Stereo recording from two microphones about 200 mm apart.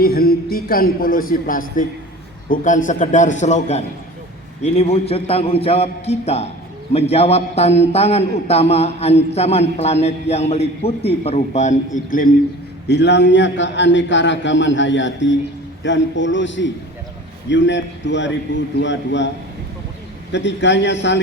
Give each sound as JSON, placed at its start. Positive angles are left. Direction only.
{"t": 0.0, "sound": "a sound", "side_deg": 50}
{"t": 2.5, "sound": "a man's voice", "side_deg": 40}
{"t": 12.9, "sound": "a man's voice", "side_deg": 60}
{"t": 20.3, "sound": "a man's voice", "side_deg": 65}